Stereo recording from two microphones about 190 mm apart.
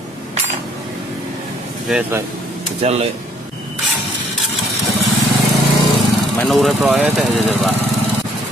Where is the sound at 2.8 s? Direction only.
30° right (ahead or behind).